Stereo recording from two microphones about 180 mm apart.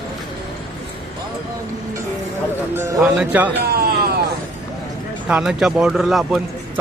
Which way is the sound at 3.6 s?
60° right (ahead or behind).